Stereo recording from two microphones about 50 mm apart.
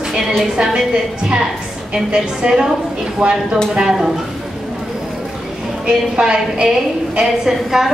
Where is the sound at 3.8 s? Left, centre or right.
Centre.